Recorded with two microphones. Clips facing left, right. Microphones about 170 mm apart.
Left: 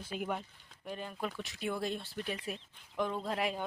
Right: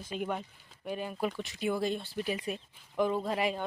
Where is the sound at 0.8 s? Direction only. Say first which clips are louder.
Right 5 dB; 10° right (ahead or behind).